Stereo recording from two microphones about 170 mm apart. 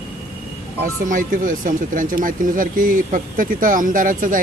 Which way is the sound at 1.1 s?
50° right (ahead or behind).